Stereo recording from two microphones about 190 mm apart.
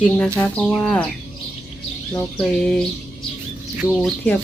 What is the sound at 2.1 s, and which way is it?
Speech, 5° left (ahead or behind).